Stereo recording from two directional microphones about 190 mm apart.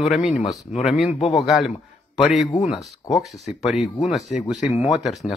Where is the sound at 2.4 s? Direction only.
25° left (ahead or behind).